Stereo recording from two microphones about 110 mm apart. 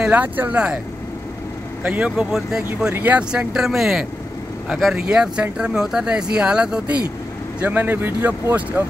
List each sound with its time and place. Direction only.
0.0 s speech: 15° right (ahead or behind)
1.8 s speech: 10° right (ahead or behind)
2.9 s speech: 15° right (ahead or behind)